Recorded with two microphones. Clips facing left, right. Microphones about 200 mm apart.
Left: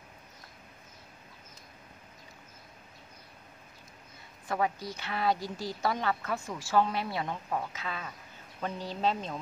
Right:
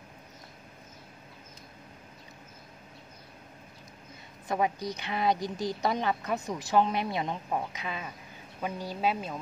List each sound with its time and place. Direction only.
4.5 s a woman's voice: 20° right (ahead or behind)